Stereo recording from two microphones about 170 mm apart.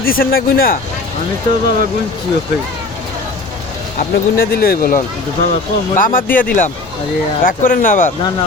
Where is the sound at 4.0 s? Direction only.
60° left (ahead or behind).